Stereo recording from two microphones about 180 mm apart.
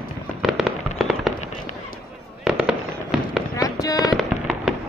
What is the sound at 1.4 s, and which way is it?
Fireworks, 40° left (ahead or behind).